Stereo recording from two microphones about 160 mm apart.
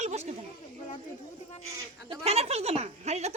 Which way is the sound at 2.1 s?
40° right (ahead or behind).